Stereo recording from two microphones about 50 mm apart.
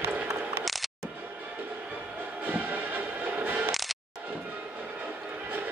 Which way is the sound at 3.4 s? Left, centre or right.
Right.